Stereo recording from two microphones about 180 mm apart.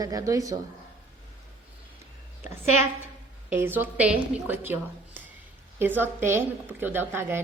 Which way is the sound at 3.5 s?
10° right (ahead or behind).